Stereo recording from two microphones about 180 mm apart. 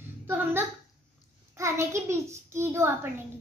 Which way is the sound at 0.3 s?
10° right (ahead or behind).